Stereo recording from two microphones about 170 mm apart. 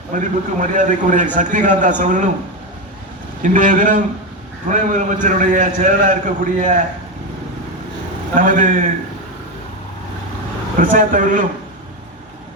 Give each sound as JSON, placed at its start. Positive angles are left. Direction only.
{"t": 0.1, "sound": "a man's voice", "side_deg": -45}
{"t": 3.4, "sound": "a man's voice", "side_deg": -50}
{"t": 8.4, "sound": "a man's voice", "side_deg": -50}
{"t": 10.8, "sound": "a man's voice", "side_deg": -50}